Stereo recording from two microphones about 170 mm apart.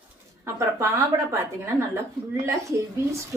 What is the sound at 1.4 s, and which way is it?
Speech, 15° right (ahead or behind).